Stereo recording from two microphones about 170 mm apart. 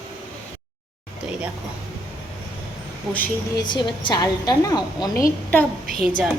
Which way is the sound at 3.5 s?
25° left (ahead or behind).